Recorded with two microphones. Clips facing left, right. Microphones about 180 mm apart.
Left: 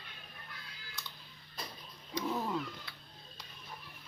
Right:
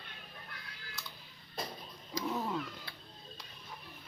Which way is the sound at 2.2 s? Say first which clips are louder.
Even; centre (ahead or behind).